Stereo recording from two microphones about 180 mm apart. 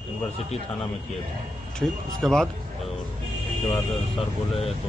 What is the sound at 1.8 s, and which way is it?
Speech, centre (ahead or behind).